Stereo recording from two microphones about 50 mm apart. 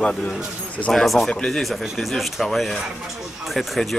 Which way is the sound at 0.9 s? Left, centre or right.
Centre.